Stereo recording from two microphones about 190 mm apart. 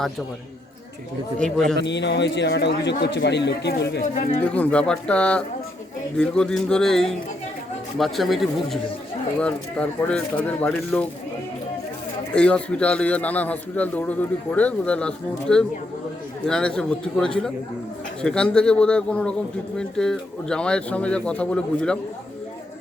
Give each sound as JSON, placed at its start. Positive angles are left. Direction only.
{"t": 1.4, "sound": "a man's voice", "side_deg": 5}
{"t": 1.8, "sound": "speech", "side_deg": 65}
{"t": 4.0, "sound": "speech", "side_deg": 40}
{"t": 4.4, "sound": "a man's voice", "side_deg": 5}
{"t": 12.3, "sound": "a man's voice", "side_deg": 5}